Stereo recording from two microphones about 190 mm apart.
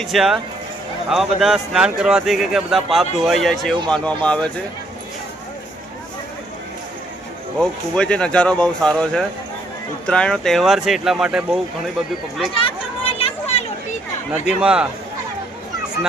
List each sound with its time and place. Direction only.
0.0 s speech: centre (ahead or behind)
7.6 s speech: 5° left (ahead or behind)
12.5 s a sound: 30° left (ahead or behind)
14.4 s speech: 5° right (ahead or behind)